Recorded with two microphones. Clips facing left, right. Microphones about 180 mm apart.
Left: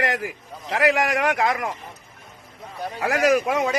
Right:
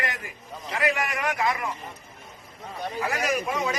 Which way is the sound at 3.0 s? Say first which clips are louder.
Left 9 dB; 80° left.